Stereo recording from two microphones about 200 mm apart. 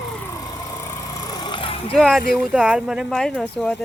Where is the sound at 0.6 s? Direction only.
15° left (ahead or behind).